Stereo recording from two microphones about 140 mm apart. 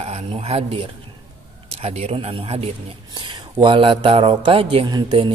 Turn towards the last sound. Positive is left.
turn(degrees=-35)  # may be behind; listen again after turning